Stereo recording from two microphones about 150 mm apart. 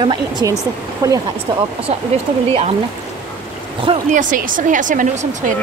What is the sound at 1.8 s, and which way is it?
Speech, 40° right (ahead or behind).